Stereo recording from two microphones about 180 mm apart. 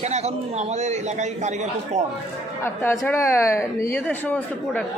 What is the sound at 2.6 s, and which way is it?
A man's voice, 15° left (ahead or behind).